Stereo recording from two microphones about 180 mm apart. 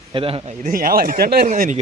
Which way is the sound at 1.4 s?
45° right (ahead or behind).